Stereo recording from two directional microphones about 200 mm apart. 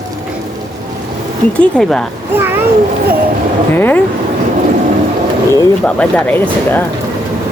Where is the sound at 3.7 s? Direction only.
10° left (ahead or behind).